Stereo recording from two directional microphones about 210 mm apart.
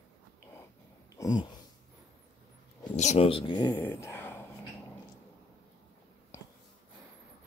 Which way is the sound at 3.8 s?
10° left (ahead or behind).